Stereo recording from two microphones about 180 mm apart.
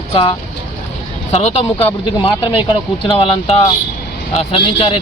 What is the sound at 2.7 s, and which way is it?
A man's voice, 30° left (ahead or behind).